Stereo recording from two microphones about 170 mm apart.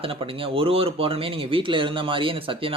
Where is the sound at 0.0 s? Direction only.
35° right (ahead or behind).